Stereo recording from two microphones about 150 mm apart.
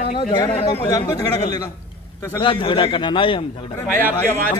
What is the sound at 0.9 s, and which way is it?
Speech, 25° left (ahead or behind).